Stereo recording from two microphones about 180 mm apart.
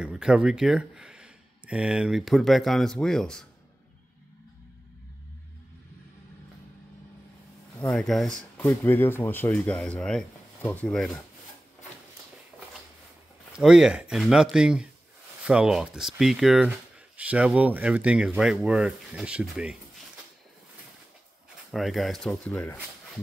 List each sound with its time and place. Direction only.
0.0 s speech: 5° right (ahead or behind)
7.8 s speech: 5° left (ahead or behind)
13.6 s speech: 5° right (ahead or behind)
21.7 s speech: centre (ahead or behind)